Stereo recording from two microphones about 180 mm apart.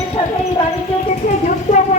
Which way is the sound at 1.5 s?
45° left (ahead or behind).